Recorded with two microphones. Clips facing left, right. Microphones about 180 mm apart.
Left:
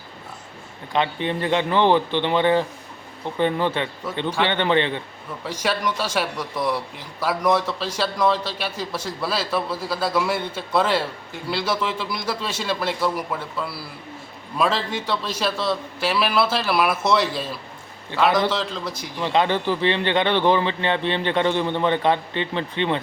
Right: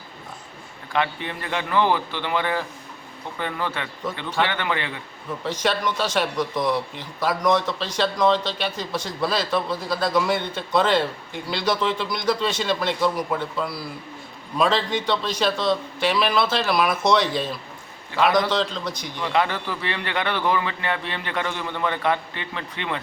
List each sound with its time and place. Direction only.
0.9 s speech: 20° left (ahead or behind)
5.5 s a man's voice: 10° left (ahead or behind)
14.6 s a man's voice: 5° left (ahead or behind)
19.2 s speech: 25° left (ahead or behind)